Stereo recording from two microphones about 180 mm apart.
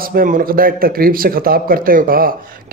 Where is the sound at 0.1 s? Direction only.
50° right (ahead or behind).